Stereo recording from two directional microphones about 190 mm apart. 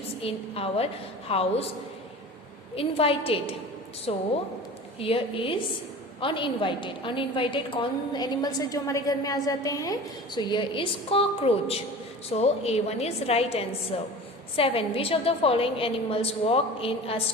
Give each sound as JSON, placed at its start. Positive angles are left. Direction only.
{"t": 0.2, "sound": "a woman's voice", "side_deg": 30}
{"t": 2.7, "sound": "a woman's voice", "side_deg": 30}